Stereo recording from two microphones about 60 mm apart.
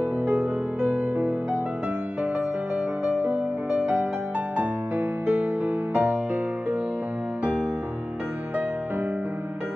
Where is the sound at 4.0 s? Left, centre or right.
Right.